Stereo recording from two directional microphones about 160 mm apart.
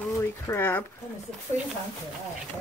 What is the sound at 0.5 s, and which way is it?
Speech, 10° left (ahead or behind).